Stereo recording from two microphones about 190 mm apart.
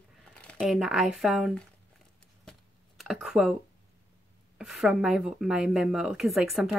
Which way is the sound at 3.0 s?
5° right (ahead or behind).